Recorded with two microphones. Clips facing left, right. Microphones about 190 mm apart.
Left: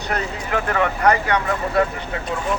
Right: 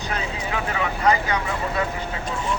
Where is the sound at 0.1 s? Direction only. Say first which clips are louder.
Left 4 dB; 60° left (ahead or behind).